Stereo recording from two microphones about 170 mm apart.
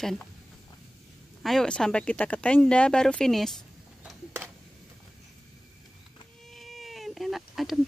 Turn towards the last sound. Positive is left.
turn(degrees=0)  # may be behind; listen again after turning